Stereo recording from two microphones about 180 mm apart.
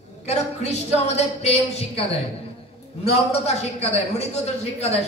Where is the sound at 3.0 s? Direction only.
35° left (ahead or behind).